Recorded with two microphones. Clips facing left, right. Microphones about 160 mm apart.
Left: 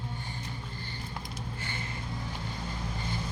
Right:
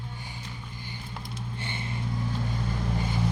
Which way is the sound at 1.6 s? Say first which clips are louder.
Right 5 dB; 25° right (ahead or behind).